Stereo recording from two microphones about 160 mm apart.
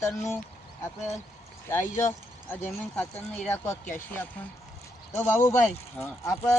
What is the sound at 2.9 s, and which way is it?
Speech, 10° left (ahead or behind).